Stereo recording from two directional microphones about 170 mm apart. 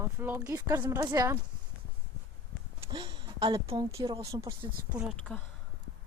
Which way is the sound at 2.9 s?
30° right (ahead or behind).